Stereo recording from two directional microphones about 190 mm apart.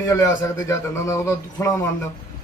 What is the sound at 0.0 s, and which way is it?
A man's voice, 15° left (ahead or behind).